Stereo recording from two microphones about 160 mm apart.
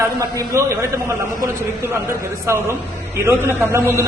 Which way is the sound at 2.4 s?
15° right (ahead or behind).